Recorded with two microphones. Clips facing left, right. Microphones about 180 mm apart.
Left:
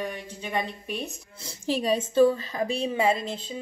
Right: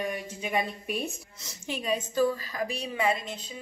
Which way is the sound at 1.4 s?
30° left (ahead or behind).